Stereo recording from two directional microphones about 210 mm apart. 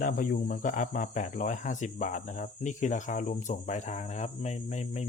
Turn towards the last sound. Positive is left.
turn(degrees=35)  # may be behind; listen again after turning